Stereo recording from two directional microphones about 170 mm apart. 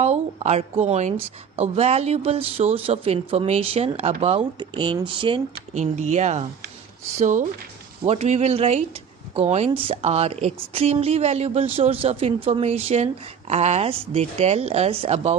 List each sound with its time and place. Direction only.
0.0 s a woman's voice: 40° right (ahead or behind)
5.7 s speech: 45° right (ahead or behind)